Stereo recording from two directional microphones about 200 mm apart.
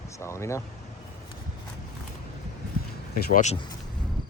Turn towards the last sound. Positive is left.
turn(degrees=40)  # may be behind; listen again after turning